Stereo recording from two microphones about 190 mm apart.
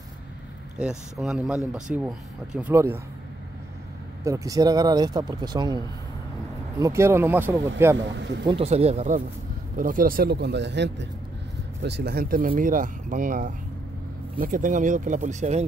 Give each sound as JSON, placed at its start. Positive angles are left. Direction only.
{"t": 0.7, "sound": "speech", "side_deg": -5}
{"t": 4.2, "sound": "speech", "side_deg": -15}
{"t": 6.8, "sound": "speech", "side_deg": -15}
{"t": 8.0, "sound": "speech", "side_deg": -70}
{"t": 8.5, "sound": "a man's voice", "side_deg": -30}